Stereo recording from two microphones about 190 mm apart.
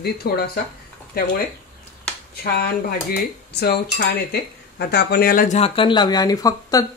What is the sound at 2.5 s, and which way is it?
Speech, 55° left (ahead or behind).